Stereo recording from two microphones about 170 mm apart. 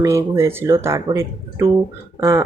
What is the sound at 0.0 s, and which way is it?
Speech, 15° right (ahead or behind).